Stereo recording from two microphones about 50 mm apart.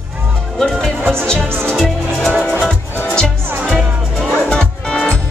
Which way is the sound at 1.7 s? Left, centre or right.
Centre.